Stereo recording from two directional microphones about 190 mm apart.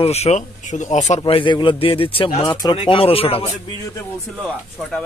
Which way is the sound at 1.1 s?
25° left (ahead or behind).